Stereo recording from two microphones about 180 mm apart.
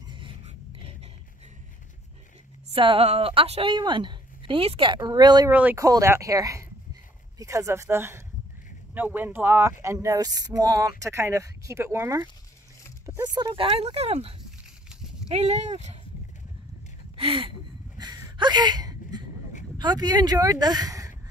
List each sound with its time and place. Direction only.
2.7 s a woman's voice: 30° right (ahead or behind)
5.5 s speech: 10° right (ahead or behind); by 14.3 s 35° right (ahead or behind)
15.3 s speech: 40° right (ahead or behind)
17.2 s a sound: 30° right (ahead or behind)
19.8 s a woman's voice: 20° right (ahead or behind)